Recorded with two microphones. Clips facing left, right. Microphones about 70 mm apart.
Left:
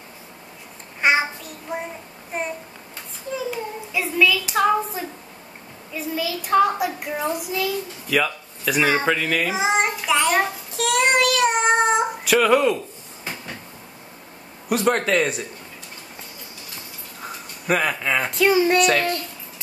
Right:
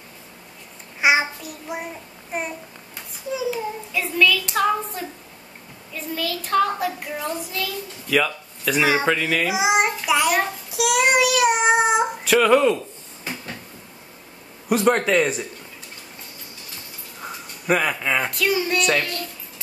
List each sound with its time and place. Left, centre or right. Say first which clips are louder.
1.0 s child singing: right 1 dB; centre
3.3 s a sound: right 2 dB; centre
3.9 s a sound: even; centre
5.9 s a child's voice: left 1 dB; centre
8.9 s child singing: even; centre
14.7 s a man's voice: right 1 dB; centre
17.2 s a sound: even; centre
18.3 s music: left 5 dB; left
18.9 s speech: left 3 dB; left